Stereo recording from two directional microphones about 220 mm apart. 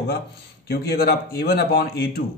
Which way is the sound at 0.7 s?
45° left (ahead or behind).